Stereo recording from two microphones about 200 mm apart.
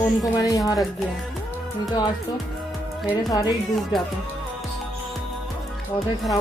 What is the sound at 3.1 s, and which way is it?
Speech, 20° left (ahead or behind).